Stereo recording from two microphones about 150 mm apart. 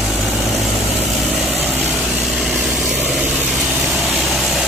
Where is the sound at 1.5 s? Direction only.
Centre (ahead or behind).